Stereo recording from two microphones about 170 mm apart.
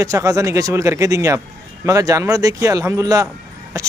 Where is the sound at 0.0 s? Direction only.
20° right (ahead or behind).